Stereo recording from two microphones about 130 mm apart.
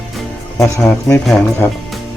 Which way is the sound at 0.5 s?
25° left (ahead or behind).